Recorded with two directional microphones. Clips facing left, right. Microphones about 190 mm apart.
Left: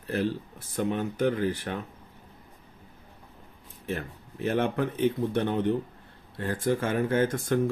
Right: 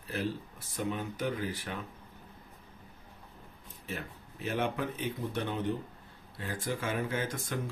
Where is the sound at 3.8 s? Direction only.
55° left (ahead or behind).